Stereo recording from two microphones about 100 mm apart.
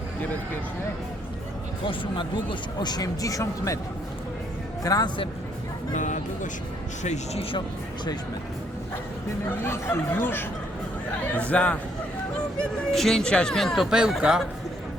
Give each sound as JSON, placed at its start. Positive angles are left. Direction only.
{"t": 1.8, "sound": "speech", "side_deg": 55}
{"t": 4.8, "sound": "speech", "side_deg": 40}
{"t": 9.6, "sound": "speech", "side_deg": 25}
{"t": 13.9, "sound": "speech", "side_deg": -5}